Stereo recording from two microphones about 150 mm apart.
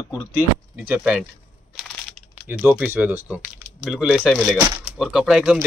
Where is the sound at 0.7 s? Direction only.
5° right (ahead or behind).